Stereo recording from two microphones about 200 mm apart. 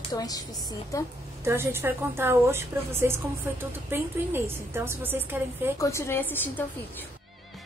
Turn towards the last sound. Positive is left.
turn(degrees=10)  # may be behind; listen again after turning